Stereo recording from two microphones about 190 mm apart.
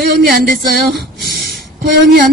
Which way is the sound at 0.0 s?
55° right (ahead or behind).